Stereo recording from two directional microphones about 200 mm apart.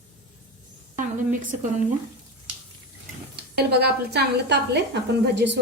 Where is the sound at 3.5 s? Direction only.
55° right (ahead or behind).